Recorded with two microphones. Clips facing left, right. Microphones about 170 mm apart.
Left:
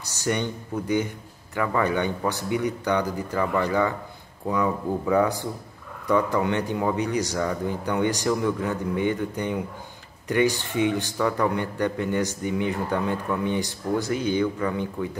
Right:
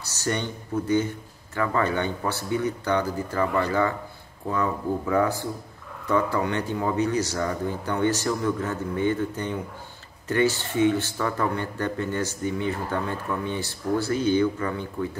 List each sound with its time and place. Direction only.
0.0 s a man's voice: 15° left (ahead or behind)